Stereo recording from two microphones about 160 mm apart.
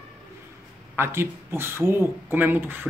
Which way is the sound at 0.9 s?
15° right (ahead or behind).